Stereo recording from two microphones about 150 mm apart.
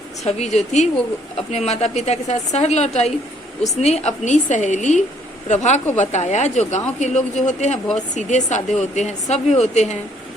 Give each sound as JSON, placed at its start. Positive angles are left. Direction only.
{"t": 0.3, "sound": "a woman's voice", "side_deg": 45}